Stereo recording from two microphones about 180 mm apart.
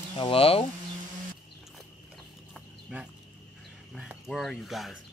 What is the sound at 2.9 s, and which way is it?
Speech, 5° right (ahead or behind).